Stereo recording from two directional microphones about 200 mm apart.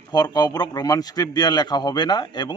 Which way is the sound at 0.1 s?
20° left (ahead or behind).